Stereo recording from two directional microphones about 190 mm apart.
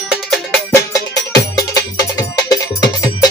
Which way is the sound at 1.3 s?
15° left (ahead or behind).